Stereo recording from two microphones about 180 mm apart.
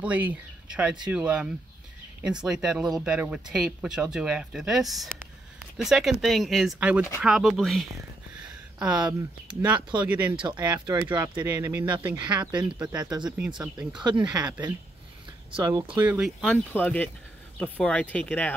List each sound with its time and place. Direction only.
0.0 s speech: 10° right (ahead or behind)
9.8 s speech: 25° right (ahead or behind)
10.0 s speech: 10° right (ahead or behind)
10.3 s speech: 25° right (ahead or behind)
12.5 s speech: 5° right (ahead or behind)
13.0 s speech: 20° right (ahead or behind)
15.5 s speech: 25° right (ahead or behind)
16.1 s speech: 5° right (ahead or behind)
16.4 s speech: 10° left (ahead or behind)